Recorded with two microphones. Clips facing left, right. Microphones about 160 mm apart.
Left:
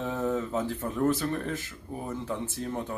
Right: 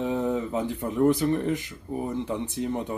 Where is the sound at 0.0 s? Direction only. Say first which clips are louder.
Right 3 dB; 15° right (ahead or behind).